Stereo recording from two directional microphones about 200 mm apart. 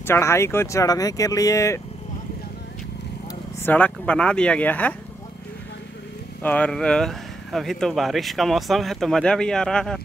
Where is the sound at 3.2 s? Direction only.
10° left (ahead or behind).